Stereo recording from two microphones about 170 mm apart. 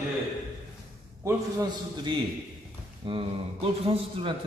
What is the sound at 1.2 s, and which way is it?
Speech, 20° right (ahead or behind).